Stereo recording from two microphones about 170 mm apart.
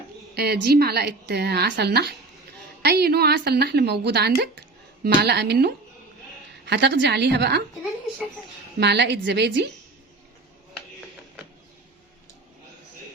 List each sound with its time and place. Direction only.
0.3 s a woman's voice: 70° right (ahead or behind)
6.7 s a woman's voice: 90° right
8.8 s a woman's voice: 80° right